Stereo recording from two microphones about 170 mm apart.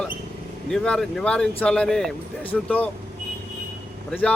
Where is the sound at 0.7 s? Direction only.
5° left (ahead or behind).